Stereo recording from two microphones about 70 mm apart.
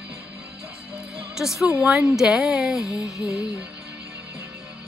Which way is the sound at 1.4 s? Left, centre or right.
Centre.